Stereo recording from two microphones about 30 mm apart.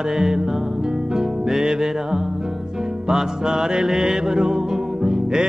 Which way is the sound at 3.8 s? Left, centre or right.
Centre.